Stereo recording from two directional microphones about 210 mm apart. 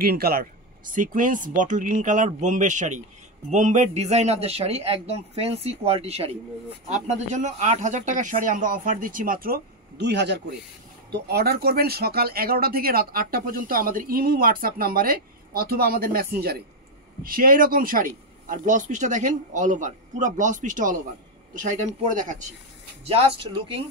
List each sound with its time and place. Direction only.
0.0 s a man's voice: 45° right (ahead or behind); by 23.8 s 25° right (ahead or behind)